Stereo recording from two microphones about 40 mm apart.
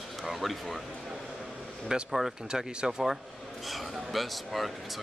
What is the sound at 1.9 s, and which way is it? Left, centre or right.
Speech, centre.